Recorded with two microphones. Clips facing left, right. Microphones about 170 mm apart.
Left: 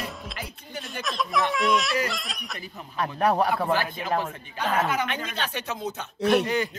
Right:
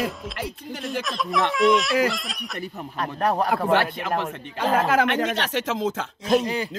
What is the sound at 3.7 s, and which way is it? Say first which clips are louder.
Speech: right 4 dB; 75° right (ahead or behind).